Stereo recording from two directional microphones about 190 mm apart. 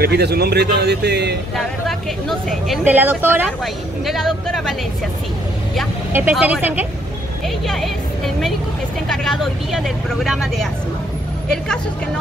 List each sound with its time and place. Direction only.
0.0 s a man's voice: 60° right (ahead or behind)
1.9 s speech: centre (ahead or behind)
2.8 s speech: 10° right (ahead or behind)
6.3 s speech: 10° right (ahead or behind)